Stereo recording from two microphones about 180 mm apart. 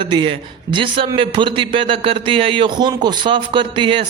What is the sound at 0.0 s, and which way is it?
A man's voice, 25° right (ahead or behind).